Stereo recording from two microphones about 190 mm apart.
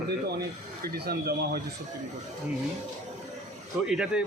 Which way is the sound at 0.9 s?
55° right (ahead or behind).